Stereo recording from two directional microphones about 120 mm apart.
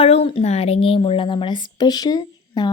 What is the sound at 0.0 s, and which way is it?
A woman's voice, 55° left (ahead or behind).